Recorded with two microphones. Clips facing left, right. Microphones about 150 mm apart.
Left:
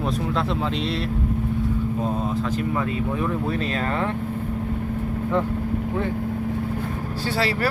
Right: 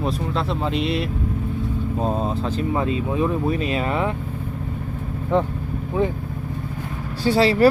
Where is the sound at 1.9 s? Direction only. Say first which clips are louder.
Right 1 dB; 30° right (ahead or behind); by 4.1 s 15° right (ahead or behind).